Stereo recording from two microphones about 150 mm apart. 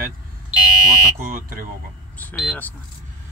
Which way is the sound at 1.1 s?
80° right.